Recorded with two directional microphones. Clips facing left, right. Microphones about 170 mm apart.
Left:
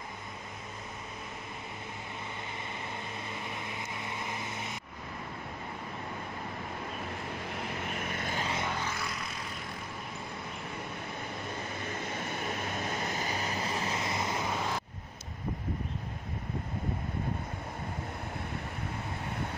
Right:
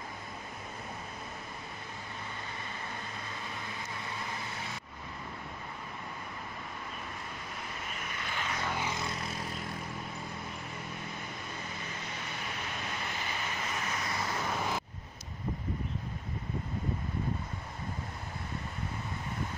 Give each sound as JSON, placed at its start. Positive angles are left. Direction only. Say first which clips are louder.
{"t": 4.0, "sound": "vehicle", "louder": "left 2 dB", "side_deg": 20}
{"t": 7.6, "sound": "vehicle", "louder": "left 6 dB", "side_deg": 55}
{"t": 8.7, "sound": "vehicle", "louder": "right 1 dB", "side_deg": -15}
{"t": 12.1, "sound": "vehicle", "louder": "left 5 dB", "side_deg": 50}